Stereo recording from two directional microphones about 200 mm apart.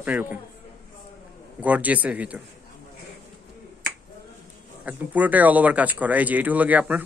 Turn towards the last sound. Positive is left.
turn(degrees=-5)  # may be behind; listen again after turning